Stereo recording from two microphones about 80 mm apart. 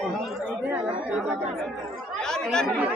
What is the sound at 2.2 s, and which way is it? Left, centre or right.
Speech, centre.